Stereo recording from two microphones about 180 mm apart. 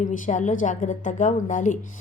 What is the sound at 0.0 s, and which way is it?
A woman's voice, 45° left (ahead or behind).